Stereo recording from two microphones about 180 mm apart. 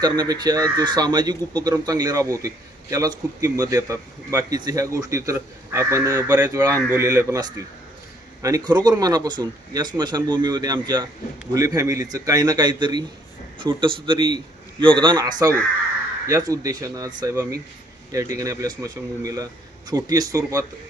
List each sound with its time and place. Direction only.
0.0 s a man's voice: 25° right (ahead or behind)